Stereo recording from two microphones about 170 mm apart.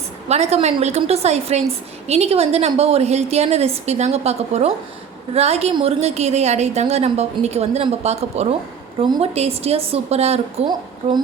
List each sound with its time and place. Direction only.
0.3 s a woman's voice: 40° right (ahead or behind)